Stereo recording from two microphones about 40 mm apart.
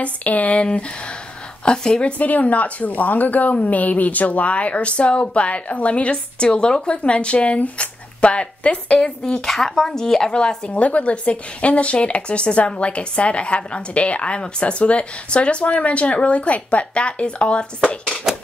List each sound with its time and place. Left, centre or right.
0.0 s a woman's voice: left
1.6 s a woman's voice: left
2.1 s a woman's voice: left
9.5 s speech: centre
10.7 s a woman's voice: left